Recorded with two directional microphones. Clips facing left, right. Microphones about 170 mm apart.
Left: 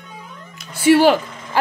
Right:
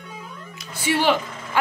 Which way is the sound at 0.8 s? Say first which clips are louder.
Left 8 dB; 45° left (ahead or behind).